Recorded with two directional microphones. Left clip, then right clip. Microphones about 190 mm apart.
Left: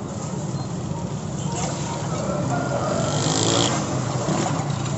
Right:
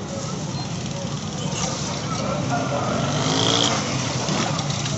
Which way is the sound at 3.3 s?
20° right (ahead or behind).